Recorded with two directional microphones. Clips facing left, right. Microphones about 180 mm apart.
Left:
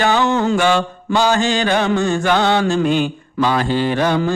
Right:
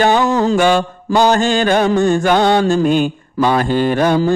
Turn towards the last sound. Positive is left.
turn(degrees=-40)  # may be behind; listen again after turning